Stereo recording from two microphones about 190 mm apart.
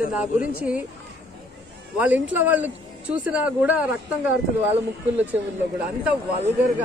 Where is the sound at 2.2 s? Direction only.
10° right (ahead or behind).